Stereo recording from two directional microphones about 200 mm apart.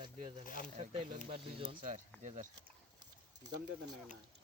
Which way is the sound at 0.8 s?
30° right (ahead or behind).